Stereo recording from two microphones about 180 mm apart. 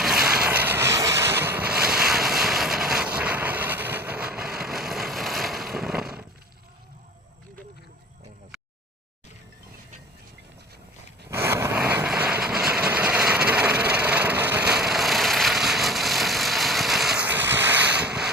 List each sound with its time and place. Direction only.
0.0 s boat: 5° right (ahead or behind)
11.3 s vehicle: 15° right (ahead or behind)